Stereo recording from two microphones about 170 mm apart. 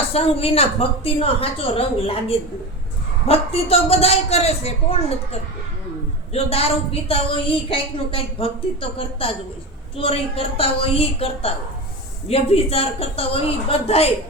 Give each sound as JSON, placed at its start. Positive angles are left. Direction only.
{"t": 0.1, "sound": "a woman's voice", "side_deg": 35}